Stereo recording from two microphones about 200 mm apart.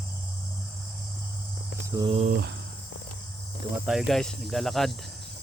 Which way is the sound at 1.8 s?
20° right (ahead or behind).